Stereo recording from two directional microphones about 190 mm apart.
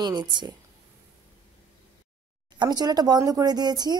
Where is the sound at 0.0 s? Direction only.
25° right (ahead or behind).